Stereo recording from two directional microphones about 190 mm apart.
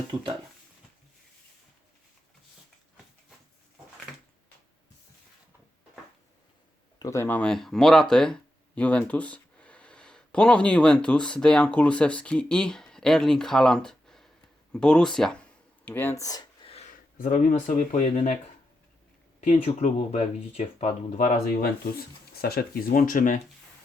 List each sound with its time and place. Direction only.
0.1 s speech: 25° right (ahead or behind)
7.0 s speech: 15° left (ahead or behind)
16.6 s a sound: 35° left (ahead or behind)
17.2 s speech: 40° left (ahead or behind)
19.4 s speech: 35° left (ahead or behind)